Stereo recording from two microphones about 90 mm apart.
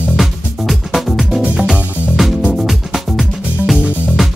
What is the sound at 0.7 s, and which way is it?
Music, centre (ahead or behind).